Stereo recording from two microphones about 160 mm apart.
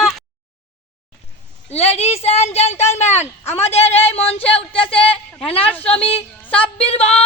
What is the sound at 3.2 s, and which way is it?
Speech, 15° left (ahead or behind).